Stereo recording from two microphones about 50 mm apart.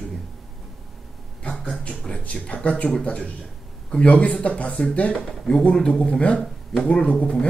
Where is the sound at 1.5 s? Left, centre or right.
Centre; by 4.7 s left.